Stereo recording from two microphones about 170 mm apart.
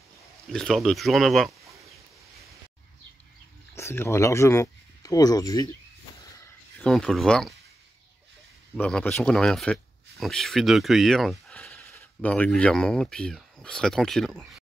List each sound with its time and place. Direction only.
0.5 s speech: 5° left (ahead or behind)
3.7 s speech: 15° left (ahead or behind)
6.4 s speech: 5° left (ahead or behind)
8.7 s speech: 10° left (ahead or behind)